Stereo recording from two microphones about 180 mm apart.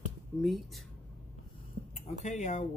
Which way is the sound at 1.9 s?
40° left (ahead or behind).